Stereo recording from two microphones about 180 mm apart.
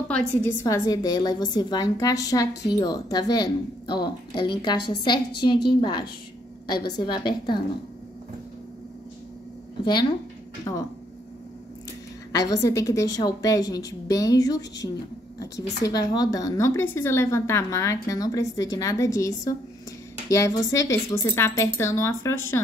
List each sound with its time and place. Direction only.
0.4 s a woman's voice: 15° left (ahead or behind)
10.6 s a woman's voice: 20° left (ahead or behind)
12.3 s a woman's voice: 20° left (ahead or behind)